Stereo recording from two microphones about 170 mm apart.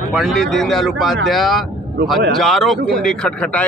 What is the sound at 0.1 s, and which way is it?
A man's voice, centre (ahead or behind).